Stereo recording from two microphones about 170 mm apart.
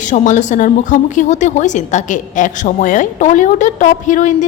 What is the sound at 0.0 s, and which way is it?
A woman's voice, 45° left (ahead or behind).